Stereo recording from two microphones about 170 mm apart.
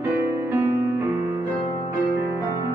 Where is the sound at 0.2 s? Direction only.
15° right (ahead or behind).